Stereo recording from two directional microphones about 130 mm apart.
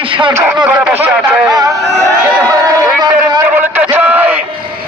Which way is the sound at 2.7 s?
35° right (ahead or behind).